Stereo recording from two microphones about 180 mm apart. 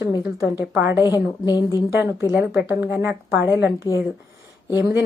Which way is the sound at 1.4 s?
20° left (ahead or behind).